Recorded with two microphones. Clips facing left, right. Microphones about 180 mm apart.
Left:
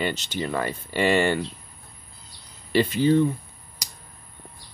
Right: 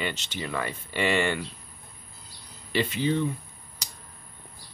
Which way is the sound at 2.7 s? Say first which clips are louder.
Left 6 dB; 40° left (ahead or behind).